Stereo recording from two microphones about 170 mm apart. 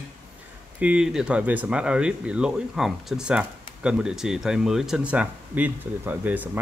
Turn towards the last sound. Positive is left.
turn(degrees=-10)  # may be behind; listen again after turning